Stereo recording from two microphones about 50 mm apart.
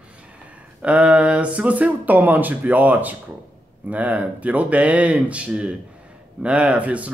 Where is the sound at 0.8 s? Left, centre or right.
Right.